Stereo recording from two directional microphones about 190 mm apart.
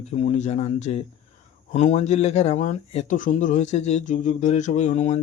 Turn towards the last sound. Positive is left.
turn(degrees=35)  # may be behind; listen again after turning